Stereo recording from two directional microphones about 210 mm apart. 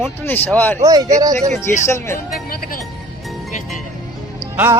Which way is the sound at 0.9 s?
15° right (ahead or behind).